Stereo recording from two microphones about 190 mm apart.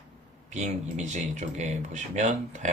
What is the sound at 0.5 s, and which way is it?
Speech, 40° right (ahead or behind).